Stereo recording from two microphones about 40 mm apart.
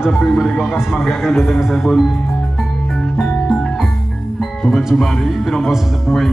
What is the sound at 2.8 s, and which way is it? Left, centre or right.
Music, centre.